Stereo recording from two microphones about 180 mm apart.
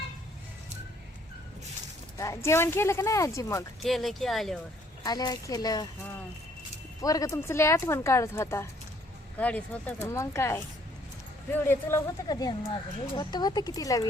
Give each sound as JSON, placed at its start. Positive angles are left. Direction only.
{"t": 2.1, "sound": "speech", "side_deg": 15}
{"t": 3.8, "sound": "speech", "side_deg": 0}
{"t": 5.0, "sound": "speech", "side_deg": 20}
{"t": 7.0, "sound": "speech", "side_deg": 20}
{"t": 11.6, "sound": "speech", "side_deg": 15}